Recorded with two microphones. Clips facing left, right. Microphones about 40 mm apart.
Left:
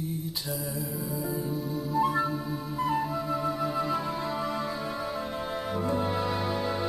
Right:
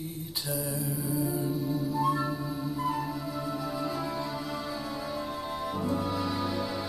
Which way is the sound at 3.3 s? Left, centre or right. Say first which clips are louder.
Left 5 dB; left.